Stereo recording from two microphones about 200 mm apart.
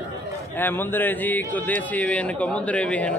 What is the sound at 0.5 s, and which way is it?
A man's voice, 10° left (ahead or behind).